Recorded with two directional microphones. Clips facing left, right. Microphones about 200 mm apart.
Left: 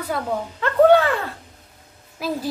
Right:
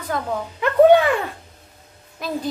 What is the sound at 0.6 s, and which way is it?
Speech, 15° right (ahead or behind).